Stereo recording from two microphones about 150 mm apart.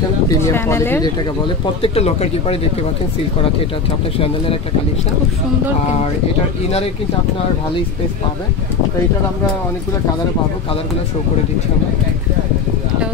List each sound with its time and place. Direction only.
0.3 s speech: 15° left (ahead or behind)
1.8 s speech: 45° left (ahead or behind)